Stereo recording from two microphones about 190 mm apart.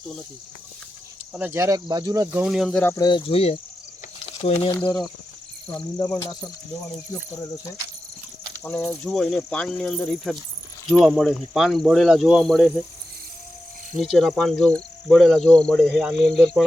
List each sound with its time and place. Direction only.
1.3 s speech: 10° right (ahead or behind)
2.9 s speech: 20° left (ahead or behind)
6.0 s cricket: 20° left (ahead or behind)
8.9 s speech: 5° left (ahead or behind)
14.0 s speech: centre (ahead or behind)